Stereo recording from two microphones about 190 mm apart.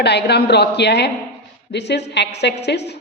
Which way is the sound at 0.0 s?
60° left (ahead or behind).